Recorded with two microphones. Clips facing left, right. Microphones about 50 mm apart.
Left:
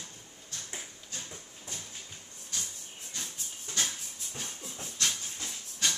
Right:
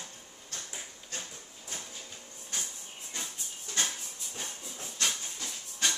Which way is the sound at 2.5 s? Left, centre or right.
Right.